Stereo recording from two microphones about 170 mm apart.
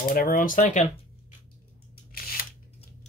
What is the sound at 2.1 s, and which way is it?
Camera, 60° left (ahead or behind).